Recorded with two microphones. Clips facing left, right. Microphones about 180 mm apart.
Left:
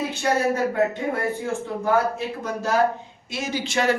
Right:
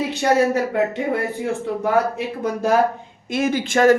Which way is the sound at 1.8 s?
65° right (ahead or behind).